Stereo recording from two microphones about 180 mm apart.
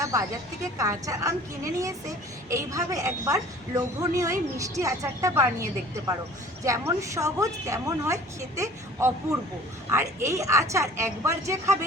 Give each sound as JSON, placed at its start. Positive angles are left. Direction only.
{"t": 0.0, "sound": "a woman's voice", "side_deg": -20}
{"t": 6.7, "sound": "a woman's voice", "side_deg": -15}